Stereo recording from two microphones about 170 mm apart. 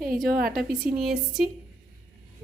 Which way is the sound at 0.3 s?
60° right (ahead or behind).